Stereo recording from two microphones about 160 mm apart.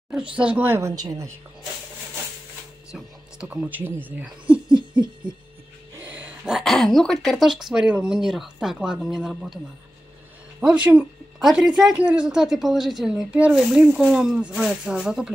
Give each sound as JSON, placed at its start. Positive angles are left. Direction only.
{"t": 0.4, "sound": "speech", "side_deg": -10}
{"t": 2.9, "sound": "speech", "side_deg": -5}
{"t": 5.9, "sound": "speech", "side_deg": -10}
{"t": 10.6, "sound": "speech", "side_deg": -5}